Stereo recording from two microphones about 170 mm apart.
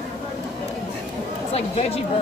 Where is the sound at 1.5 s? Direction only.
35° left (ahead or behind).